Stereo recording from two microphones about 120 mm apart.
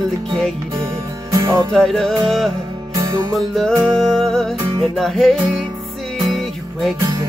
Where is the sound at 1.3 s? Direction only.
25° right (ahead or behind).